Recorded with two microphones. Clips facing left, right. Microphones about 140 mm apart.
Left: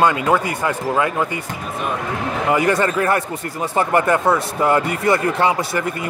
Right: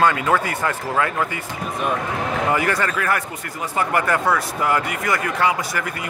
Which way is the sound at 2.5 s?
25° left (ahead or behind).